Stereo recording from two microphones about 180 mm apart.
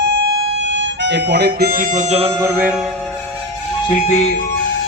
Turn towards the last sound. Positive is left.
turn(degrees=35)  # may be behind; listen again after turning